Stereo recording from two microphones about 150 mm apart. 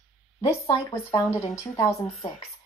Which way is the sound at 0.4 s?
20° left (ahead or behind).